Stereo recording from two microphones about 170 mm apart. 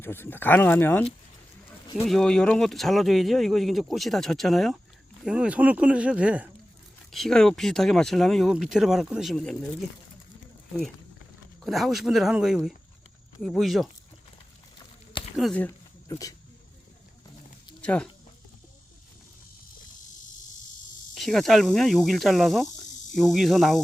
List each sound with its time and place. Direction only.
0.0 s speech: 15° left (ahead or behind)
2.0 s speech: 5° left (ahead or behind)
11.6 s speech: centre (ahead or behind)
15.4 s speech: centre (ahead or behind)
15.6 s a sound: 20° left (ahead or behind)
17.8 s speech: 5° left (ahead or behind)
21.2 s speech: centre (ahead or behind)